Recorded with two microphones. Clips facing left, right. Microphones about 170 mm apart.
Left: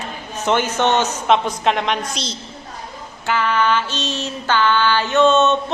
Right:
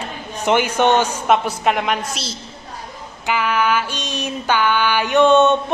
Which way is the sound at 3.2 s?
10° right (ahead or behind).